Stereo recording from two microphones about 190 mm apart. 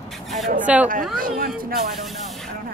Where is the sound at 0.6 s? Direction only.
5° right (ahead or behind).